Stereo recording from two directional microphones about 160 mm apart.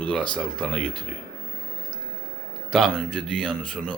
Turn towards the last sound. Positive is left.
turn(degrees=5)  # may be behind; listen again after turning